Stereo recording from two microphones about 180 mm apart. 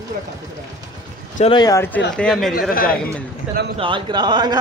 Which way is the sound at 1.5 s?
20° left (ahead or behind).